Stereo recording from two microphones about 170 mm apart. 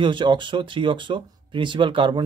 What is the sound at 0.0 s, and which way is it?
Speech, 30° right (ahead or behind).